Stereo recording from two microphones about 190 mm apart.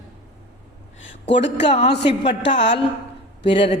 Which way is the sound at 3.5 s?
30° left (ahead or behind).